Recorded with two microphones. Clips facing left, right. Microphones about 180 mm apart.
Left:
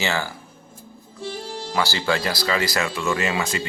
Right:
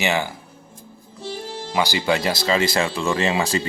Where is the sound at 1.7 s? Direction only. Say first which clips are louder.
Right 2 dB; 15° right (ahead or behind).